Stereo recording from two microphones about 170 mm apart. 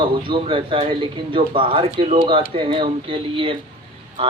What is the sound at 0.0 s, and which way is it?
A man's voice, 30° right (ahead or behind).